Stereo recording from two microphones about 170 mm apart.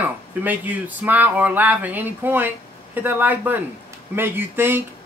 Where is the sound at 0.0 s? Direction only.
10° right (ahead or behind).